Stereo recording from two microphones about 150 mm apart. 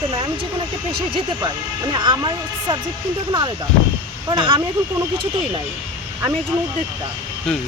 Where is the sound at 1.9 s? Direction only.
30° right (ahead or behind).